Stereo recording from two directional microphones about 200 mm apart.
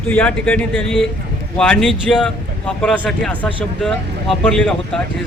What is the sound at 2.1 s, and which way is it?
A man's voice, 5° left (ahead or behind).